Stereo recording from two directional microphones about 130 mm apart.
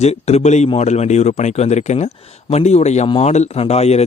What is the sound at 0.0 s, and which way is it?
Speech, 55° left (ahead or behind).